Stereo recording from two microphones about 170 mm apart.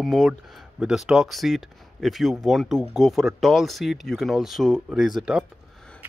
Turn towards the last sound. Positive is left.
turn(degrees=-5)  # may be behind; listen again after turning